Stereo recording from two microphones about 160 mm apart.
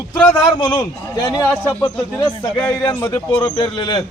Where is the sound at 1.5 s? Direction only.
10° left (ahead or behind).